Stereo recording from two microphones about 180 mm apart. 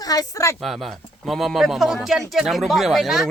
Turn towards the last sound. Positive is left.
turn(degrees=0)  # may be behind; listen again after turning